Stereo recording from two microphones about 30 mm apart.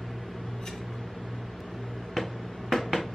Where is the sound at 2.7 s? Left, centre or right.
Centre.